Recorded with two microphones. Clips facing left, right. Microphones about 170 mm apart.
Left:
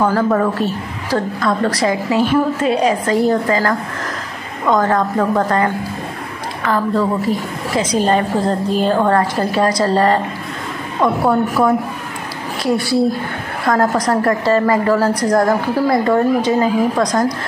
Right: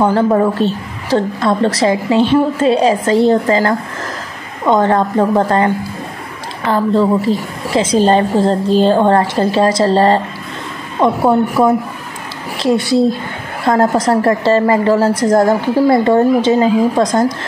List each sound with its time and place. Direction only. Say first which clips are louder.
0.0 s a woman's voice: right 3 dB; 25° right (ahead or behind)